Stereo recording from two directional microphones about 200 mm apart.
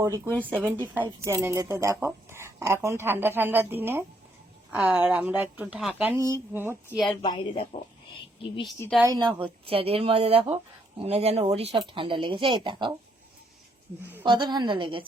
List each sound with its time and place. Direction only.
0.3 s speech: 5° left (ahead or behind)
0.9 s a woman's voice: 10° right (ahead or behind)
7.2 s a woman's voice: 25° left (ahead or behind)
9.0 s speech: 20° right (ahead or behind)
14.0 s a woman's voice: 10° right (ahead or behind)
14.3 s speech: 20° right (ahead or behind)